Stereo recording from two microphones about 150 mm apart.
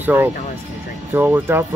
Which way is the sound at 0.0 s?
15° right (ahead or behind).